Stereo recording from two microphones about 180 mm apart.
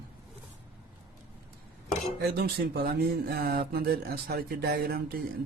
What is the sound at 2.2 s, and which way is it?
Speech, 60° right (ahead or behind).